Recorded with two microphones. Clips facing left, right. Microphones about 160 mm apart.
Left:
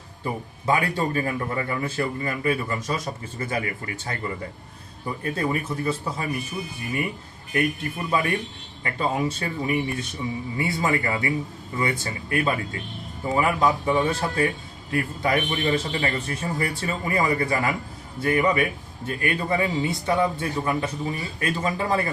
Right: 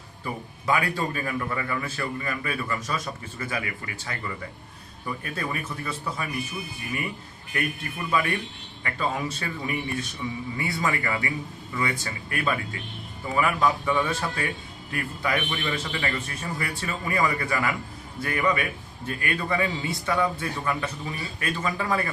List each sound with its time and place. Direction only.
0.6 s a man's voice: 30° left (ahead or behind)
7.5 s a man's voice: 30° left (ahead or behind)